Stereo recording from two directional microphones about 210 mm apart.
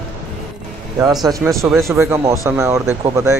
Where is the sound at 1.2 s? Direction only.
15° right (ahead or behind).